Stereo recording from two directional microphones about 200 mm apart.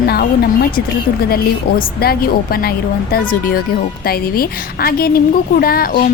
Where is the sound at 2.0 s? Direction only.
50° left (ahead or behind).